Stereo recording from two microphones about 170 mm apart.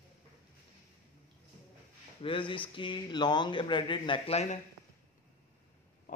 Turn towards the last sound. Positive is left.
turn(degrees=40)  # may be behind; listen again after turning